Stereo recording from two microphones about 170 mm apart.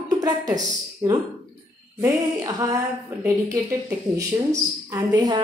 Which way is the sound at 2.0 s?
20° right (ahead or behind).